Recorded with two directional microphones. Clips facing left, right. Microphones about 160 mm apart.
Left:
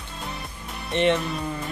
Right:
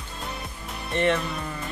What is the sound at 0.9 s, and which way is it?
Speech, 20° left (ahead or behind).